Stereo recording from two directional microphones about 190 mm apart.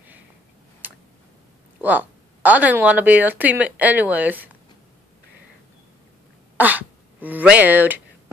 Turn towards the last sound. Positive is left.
turn(degrees=-10)  # may be behind; listen again after turning